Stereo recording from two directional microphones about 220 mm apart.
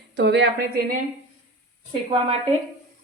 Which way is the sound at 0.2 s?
50° right (ahead or behind).